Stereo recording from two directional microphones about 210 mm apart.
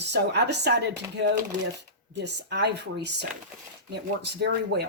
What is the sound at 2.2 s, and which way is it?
Speech, 55° right (ahead or behind).